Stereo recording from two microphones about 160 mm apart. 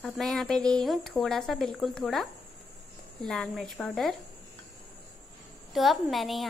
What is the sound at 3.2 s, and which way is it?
Speech, centre (ahead or behind).